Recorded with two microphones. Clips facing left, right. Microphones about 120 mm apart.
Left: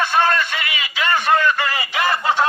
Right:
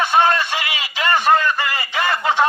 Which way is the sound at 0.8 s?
35° right (ahead or behind).